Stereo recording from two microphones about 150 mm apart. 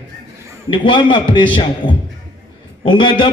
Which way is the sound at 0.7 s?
35° left (ahead or behind).